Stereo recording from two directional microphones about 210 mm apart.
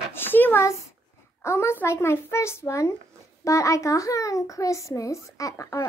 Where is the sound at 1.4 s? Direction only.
10° left (ahead or behind).